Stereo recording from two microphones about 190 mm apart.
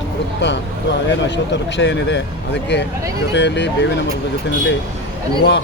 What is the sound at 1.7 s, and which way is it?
Speech, 65° left (ahead or behind).